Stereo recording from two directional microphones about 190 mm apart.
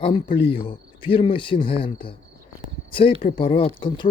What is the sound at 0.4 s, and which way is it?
Speech, 30° left (ahead or behind).